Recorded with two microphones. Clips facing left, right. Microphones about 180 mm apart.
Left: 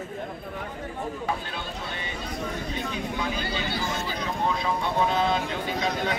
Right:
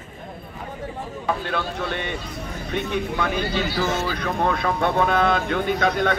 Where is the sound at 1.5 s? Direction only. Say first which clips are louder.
Right 8 dB; 65° right (ahead or behind).